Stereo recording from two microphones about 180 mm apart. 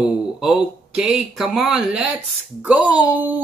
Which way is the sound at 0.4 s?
5° right (ahead or behind).